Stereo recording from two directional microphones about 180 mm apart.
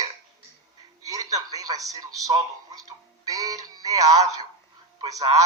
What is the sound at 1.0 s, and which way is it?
A man's voice, 20° right (ahead or behind).